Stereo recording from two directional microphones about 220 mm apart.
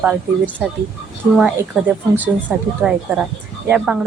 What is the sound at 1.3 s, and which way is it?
Speech, 5° right (ahead or behind).